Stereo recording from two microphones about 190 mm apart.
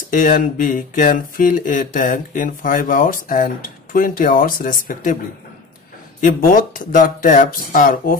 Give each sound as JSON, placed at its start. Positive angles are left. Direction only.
{"t": 0.1, "sound": "speech", "side_deg": 45}
{"t": 6.2, "sound": "speech", "side_deg": 45}